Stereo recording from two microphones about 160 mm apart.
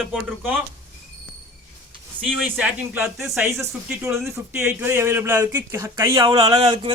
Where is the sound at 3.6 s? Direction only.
15° right (ahead or behind).